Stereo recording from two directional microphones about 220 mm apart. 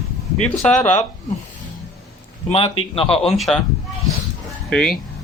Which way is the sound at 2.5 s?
25° left (ahead or behind).